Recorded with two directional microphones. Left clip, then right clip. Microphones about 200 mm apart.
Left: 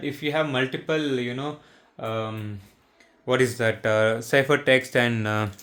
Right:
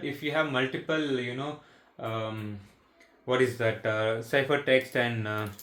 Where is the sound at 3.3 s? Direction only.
60° left (ahead or behind).